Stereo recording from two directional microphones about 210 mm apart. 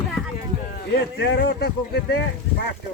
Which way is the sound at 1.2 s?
55° left (ahead or behind).